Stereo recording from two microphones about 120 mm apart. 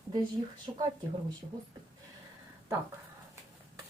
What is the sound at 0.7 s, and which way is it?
Speech, 35° right (ahead or behind).